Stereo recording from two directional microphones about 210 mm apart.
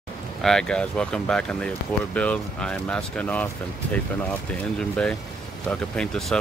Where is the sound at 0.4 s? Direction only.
5° left (ahead or behind).